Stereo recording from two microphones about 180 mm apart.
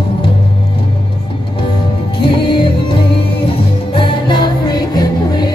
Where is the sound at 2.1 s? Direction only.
30° left (ahead or behind).